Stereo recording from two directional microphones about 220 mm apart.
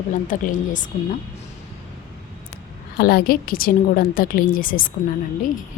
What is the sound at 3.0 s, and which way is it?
Speech, 45° left (ahead or behind).